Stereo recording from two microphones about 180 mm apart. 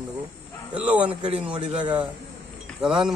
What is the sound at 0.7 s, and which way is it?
Speech, 5° right (ahead or behind).